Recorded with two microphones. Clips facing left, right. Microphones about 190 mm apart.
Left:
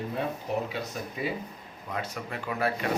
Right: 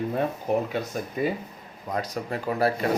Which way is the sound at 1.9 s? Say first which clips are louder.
Right 5 dB; 40° right (ahead or behind).